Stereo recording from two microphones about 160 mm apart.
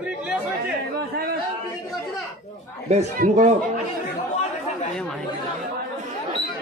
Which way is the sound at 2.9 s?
45° right (ahead or behind).